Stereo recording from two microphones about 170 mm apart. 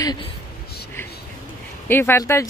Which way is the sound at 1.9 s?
15° left (ahead or behind).